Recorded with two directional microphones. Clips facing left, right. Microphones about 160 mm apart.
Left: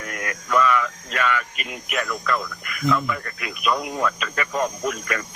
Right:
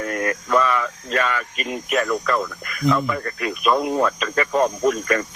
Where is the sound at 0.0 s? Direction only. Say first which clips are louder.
Right 8 dB; 35° right (ahead or behind).